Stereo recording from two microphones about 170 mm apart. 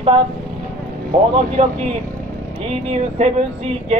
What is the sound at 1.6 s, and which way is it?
Speech, 45° right (ahead or behind).